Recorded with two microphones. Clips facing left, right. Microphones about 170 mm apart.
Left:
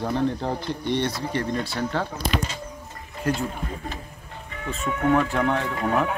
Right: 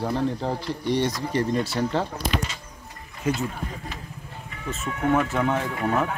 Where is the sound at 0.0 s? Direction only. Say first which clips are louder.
Left 1 dB; 5° right (ahead or behind).